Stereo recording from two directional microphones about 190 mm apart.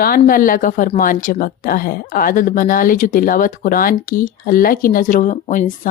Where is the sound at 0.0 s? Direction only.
50° left (ahead or behind).